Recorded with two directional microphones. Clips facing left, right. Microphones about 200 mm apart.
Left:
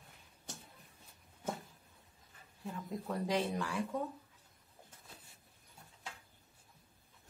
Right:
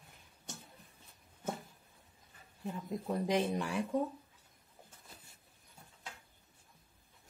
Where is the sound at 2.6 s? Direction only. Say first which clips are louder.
Right 3 dB; 20° right (ahead or behind).